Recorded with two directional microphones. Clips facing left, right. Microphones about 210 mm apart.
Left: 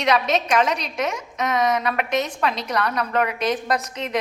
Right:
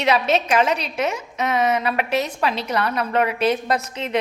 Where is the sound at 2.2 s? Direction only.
5° right (ahead or behind).